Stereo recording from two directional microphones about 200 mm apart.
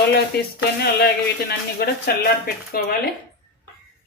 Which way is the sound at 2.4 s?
50° left (ahead or behind).